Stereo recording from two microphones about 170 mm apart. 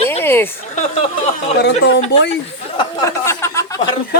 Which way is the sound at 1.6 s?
90° left.